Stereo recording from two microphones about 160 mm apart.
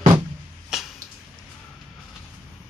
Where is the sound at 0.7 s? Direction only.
5° right (ahead or behind).